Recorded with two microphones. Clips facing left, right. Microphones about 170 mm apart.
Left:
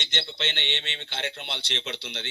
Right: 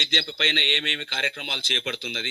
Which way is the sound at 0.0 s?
55° right (ahead or behind).